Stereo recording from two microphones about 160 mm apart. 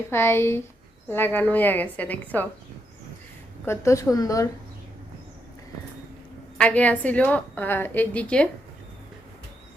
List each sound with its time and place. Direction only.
0.1 s a woman's voice: 15° left (ahead or behind)
3.7 s a woman's voice: 15° left (ahead or behind)
6.6 s a woman's voice: 10° left (ahead or behind)